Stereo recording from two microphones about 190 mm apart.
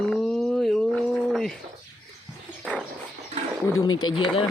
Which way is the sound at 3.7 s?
90° left.